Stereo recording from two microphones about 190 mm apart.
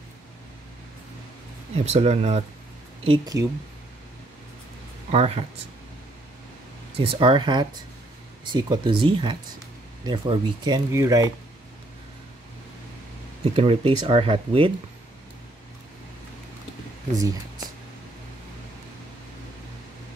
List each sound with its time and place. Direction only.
1.9 s speech: 35° right (ahead or behind)
5.1 s speech: 30° right (ahead or behind)
7.0 s speech: 30° right (ahead or behind)
13.4 s speech: 30° right (ahead or behind)
17.1 s speech: 20° right (ahead or behind)